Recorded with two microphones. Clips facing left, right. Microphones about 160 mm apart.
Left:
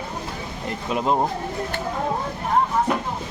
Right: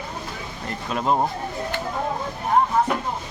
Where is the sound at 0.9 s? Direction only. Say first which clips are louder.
Left 1 dB; 15° left (ahead or behind).